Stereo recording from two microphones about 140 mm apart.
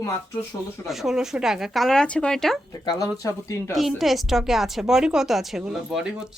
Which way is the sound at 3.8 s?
Centre (ahead or behind).